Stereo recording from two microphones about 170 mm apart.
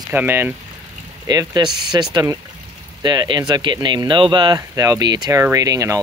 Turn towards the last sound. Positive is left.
turn(degrees=-20)  # may be behind; listen again after turning